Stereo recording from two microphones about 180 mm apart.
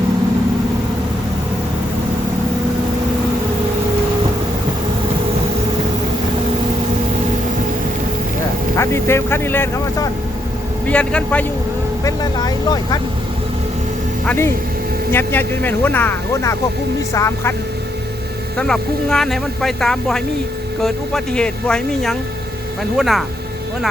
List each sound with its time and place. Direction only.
8.7 s a man's voice: 15° left (ahead or behind)
12.0 s speech: 20° left (ahead or behind)
14.3 s speech: 15° left (ahead or behind)
18.5 s speech: 5° left (ahead or behind)